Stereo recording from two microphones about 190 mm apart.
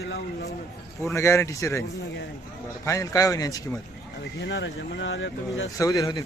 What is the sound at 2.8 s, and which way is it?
Speech, 15° left (ahead or behind).